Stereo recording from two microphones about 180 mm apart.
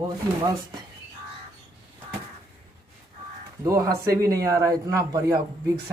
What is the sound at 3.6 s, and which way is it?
Speech, 20° right (ahead or behind).